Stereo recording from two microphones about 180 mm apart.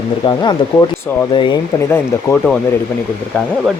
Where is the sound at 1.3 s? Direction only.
25° left (ahead or behind).